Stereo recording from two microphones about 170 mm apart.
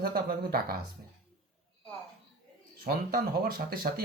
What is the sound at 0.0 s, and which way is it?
Speech, 60° right (ahead or behind).